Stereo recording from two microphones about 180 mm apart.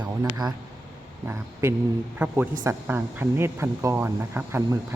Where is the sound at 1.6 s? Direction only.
15° right (ahead or behind).